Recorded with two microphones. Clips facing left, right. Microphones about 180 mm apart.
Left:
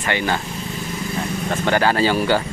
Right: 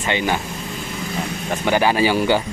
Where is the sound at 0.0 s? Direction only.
15° right (ahead or behind).